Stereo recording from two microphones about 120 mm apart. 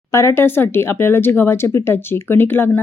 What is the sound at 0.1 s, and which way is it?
Speech, 25° left (ahead or behind).